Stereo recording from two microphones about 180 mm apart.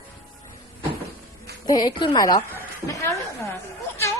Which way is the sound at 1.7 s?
25° left (ahead or behind).